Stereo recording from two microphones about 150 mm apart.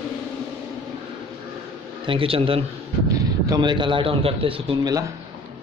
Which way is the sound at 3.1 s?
25° right (ahead or behind).